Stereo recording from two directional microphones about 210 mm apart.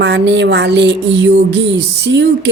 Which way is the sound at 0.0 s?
55° right (ahead or behind).